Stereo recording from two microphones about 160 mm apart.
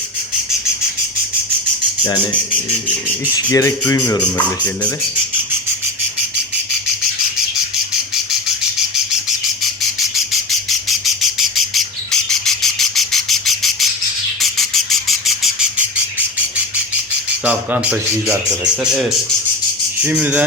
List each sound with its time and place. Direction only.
3.3 s speech: 20° left (ahead or behind)
10.5 s bird: centre (ahead or behind)
14.4 s insect: centre (ahead or behind)
17.4 s squawk: 10° right (ahead or behind)
18.6 s speech: 5° right (ahead or behind)
20.0 s squawk: 10° right (ahead or behind)